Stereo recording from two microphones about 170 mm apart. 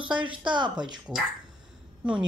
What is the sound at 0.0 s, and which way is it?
Speech, 30° right (ahead or behind).